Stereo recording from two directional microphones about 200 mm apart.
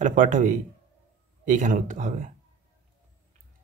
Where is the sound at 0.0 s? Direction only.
40° right (ahead or behind).